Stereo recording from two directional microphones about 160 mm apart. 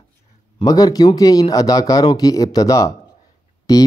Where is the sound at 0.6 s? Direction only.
25° left (ahead or behind).